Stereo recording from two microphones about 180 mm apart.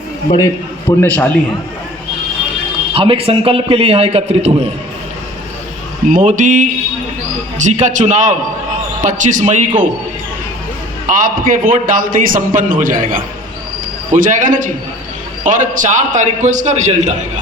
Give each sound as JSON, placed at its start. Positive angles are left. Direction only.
{"t": 0.3, "sound": "a man's voice", "side_deg": 20}
{"t": 1.0, "sound": "a man's voice", "side_deg": 10}
{"t": 2.9, "sound": "a man's voice", "side_deg": -30}
{"t": 6.1, "sound": "a man's voice", "side_deg": -45}
{"t": 11.0, "sound": "a man's voice", "side_deg": -50}